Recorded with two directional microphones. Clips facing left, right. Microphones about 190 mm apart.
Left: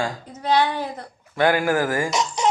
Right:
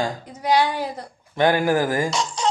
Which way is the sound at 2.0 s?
20° left (ahead or behind).